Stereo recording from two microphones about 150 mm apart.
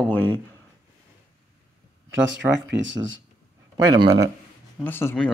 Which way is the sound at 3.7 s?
25° right (ahead or behind).